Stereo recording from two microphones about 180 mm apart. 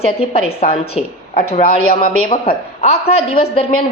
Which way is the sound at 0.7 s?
35° left (ahead or behind).